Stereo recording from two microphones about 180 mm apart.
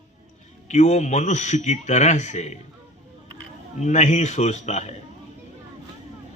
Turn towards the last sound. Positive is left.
turn(degrees=40)  # may be behind; listen again after turning